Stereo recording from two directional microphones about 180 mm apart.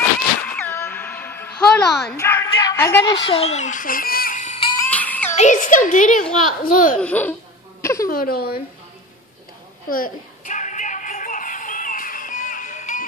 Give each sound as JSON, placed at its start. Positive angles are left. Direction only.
{"t": 0.5, "sound": "music", "side_deg": 10}
{"t": 2.1, "sound": "speech", "side_deg": 15}
{"t": 4.7, "sound": "music", "side_deg": 10}
{"t": 5.3, "sound": "a woman's voice", "side_deg": 40}
{"t": 7.0, "sound": "a child's voice", "side_deg": 10}
{"t": 7.8, "sound": "a sound", "side_deg": 15}
{"t": 8.1, "sound": "speech", "side_deg": 55}
{"t": 9.8, "sound": "music", "side_deg": 50}